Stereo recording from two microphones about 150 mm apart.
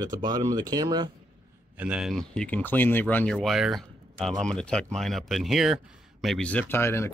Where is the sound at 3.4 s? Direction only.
Centre (ahead or behind); by 7.1 s 15° left (ahead or behind).